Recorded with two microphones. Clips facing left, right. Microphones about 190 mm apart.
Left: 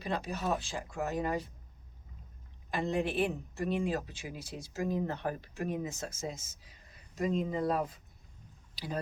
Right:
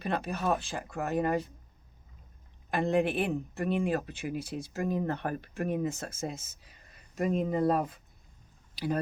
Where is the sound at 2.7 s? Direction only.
55° right (ahead or behind).